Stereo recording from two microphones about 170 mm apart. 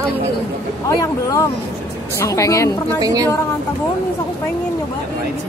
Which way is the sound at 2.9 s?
20° right (ahead or behind).